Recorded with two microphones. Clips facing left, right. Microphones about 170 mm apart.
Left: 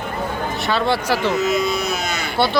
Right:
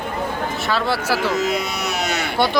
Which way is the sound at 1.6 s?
75° right (ahead or behind).